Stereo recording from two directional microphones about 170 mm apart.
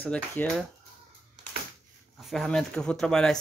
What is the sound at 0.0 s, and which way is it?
Speech, 10° left (ahead or behind).